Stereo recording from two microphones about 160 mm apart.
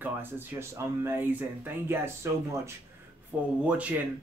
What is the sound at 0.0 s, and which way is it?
Speech, 15° right (ahead or behind).